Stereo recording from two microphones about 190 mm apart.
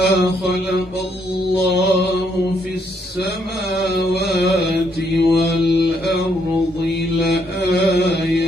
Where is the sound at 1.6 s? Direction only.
55° left (ahead or behind).